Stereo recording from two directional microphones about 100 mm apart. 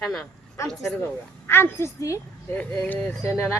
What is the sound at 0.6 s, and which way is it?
Speech, 30° left (ahead or behind).